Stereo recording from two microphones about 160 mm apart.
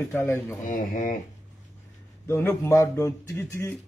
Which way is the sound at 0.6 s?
55° left (ahead or behind).